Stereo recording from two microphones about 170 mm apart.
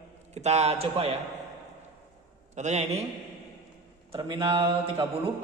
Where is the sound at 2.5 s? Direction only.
45° right (ahead or behind).